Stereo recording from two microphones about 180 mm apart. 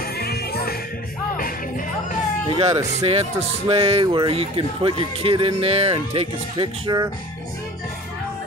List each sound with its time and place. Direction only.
0.2 s music: 60° left (ahead or behind)
2.5 s speech: 30° right (ahead or behind)